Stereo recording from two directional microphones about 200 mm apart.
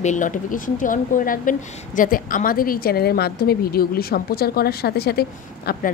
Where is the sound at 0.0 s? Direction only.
40° left (ahead or behind).